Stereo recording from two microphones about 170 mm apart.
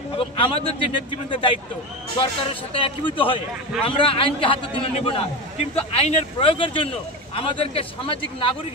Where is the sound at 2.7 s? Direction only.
30° left (ahead or behind).